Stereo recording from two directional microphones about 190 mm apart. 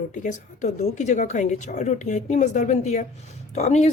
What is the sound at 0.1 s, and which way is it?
A woman's voice, 40° left (ahead or behind).